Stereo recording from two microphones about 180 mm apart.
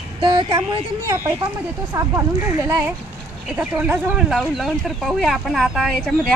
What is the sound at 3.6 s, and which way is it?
Speech, 10° right (ahead or behind).